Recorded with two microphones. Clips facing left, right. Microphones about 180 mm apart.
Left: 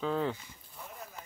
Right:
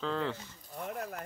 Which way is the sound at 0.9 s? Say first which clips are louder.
Right 9 dB; 70° right (ahead or behind).